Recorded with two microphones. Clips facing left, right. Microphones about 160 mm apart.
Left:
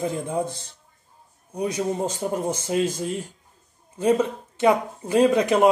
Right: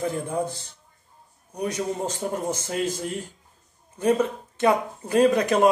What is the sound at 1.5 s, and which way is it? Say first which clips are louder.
A man's voice: left 2 dB; 15° left (ahead or behind).